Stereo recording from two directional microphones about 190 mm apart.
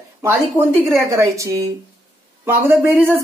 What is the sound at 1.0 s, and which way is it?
Speech, 15° right (ahead or behind).